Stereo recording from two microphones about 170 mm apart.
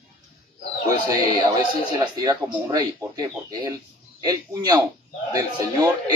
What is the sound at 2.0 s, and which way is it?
Speech, 25° right (ahead or behind).